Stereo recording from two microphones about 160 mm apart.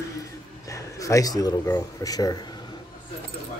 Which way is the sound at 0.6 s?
20° left (ahead or behind).